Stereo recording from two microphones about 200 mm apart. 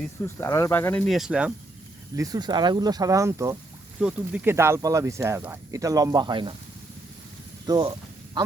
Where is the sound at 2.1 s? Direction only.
20° right (ahead or behind).